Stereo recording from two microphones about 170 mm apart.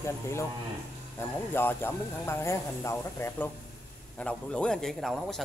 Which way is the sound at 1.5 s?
15° left (ahead or behind).